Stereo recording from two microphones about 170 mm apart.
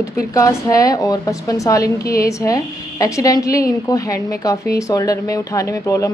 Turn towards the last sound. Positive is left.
turn(degrees=20)  # may be behind; listen again after turning